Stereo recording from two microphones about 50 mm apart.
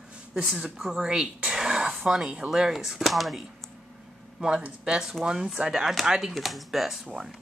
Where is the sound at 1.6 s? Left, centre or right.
Centre.